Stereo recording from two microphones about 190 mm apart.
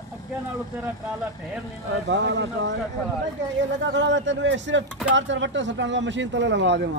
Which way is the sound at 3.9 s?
75° right (ahead or behind).